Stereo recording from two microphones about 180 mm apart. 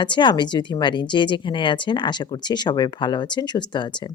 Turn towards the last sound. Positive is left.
turn(degrees=25)  # may be behind; listen again after turning